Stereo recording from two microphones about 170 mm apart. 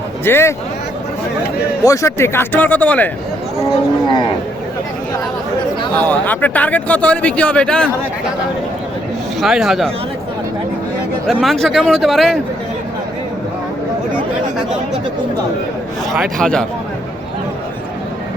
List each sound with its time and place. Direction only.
0.3 s speech: 15° left (ahead or behind)
1.8 s speech: 20° left (ahead or behind)
6.1 s speech: 10° left (ahead or behind)
9.4 s speech: centre (ahead or behind)
11.3 s speech: centre (ahead or behind)
16.1 s speech: centre (ahead or behind)